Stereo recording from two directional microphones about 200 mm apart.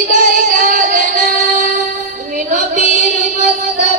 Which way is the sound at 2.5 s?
40° right (ahead or behind).